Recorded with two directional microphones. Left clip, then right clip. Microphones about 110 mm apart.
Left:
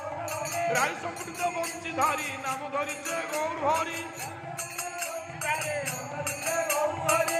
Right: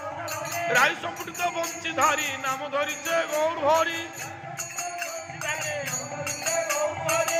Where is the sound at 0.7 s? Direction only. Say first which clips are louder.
Right 9 dB; 20° right (ahead or behind).